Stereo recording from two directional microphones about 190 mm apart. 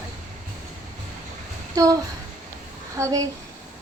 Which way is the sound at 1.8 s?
20° right (ahead or behind).